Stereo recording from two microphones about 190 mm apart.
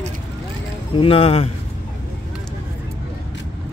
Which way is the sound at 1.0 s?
30° left (ahead or behind).